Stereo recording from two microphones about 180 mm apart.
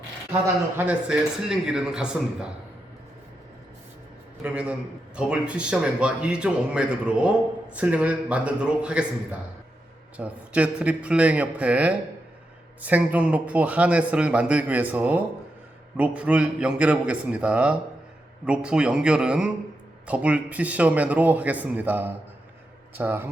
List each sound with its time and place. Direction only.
0.9 s a man's voice: 5° right (ahead or behind)
4.4 s a man's voice: 5° right (ahead or behind)